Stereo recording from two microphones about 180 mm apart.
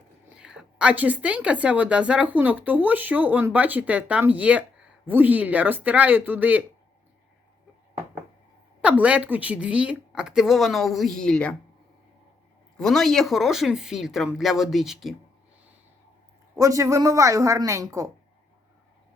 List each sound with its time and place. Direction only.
0.3 s a woman's voice: 5° right (ahead or behind)
8.8 s a woman's voice: 5° right (ahead or behind)
12.7 s a woman's voice: 5° left (ahead or behind)
16.6 s a woman's voice: 15° right (ahead or behind)